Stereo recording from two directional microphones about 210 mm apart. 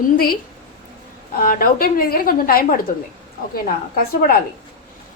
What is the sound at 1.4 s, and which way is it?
A woman's voice, 45° left (ahead or behind).